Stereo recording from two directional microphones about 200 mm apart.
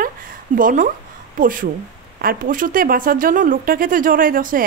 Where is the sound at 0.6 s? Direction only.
40° right (ahead or behind).